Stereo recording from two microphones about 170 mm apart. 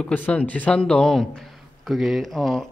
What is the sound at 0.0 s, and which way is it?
A man's voice, 10° left (ahead or behind).